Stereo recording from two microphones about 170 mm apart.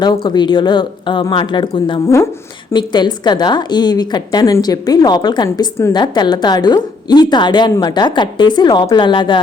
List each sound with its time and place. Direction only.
0.0 s a woman's voice: 25° left (ahead or behind)
2.0 s a woman's voice: 15° left (ahead or behind)